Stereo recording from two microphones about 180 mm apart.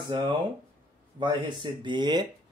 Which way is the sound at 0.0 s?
25° right (ahead or behind).